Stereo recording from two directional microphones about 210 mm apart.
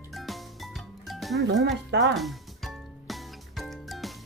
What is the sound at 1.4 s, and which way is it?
Speech, 55° right (ahead or behind).